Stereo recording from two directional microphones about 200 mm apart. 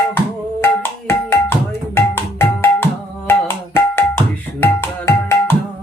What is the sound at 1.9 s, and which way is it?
Music, 10° left (ahead or behind).